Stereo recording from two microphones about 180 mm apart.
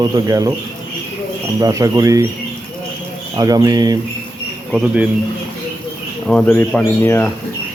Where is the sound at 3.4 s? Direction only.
20° right (ahead or behind).